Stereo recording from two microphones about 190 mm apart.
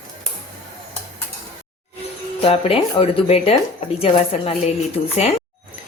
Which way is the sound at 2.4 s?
30° left (ahead or behind).